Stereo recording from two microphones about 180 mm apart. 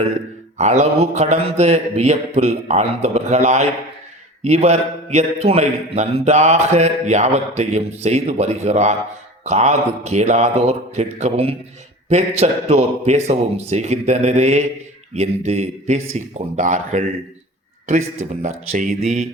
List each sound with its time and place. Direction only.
0.6 s speech: 40° right (ahead or behind)